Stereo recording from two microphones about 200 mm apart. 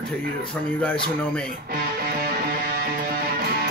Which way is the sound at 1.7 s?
45° right (ahead or behind).